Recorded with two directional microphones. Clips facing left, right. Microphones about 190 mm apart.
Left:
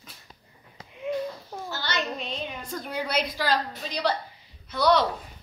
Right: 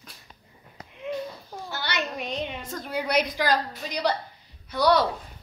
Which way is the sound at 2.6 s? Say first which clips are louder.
Right 1 dB; 5° right (ahead or behind).